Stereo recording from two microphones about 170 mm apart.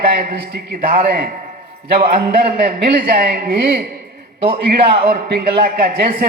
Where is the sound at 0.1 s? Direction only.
65° right (ahead or behind).